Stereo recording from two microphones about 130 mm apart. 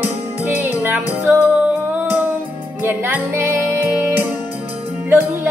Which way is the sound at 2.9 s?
15° right (ahead or behind).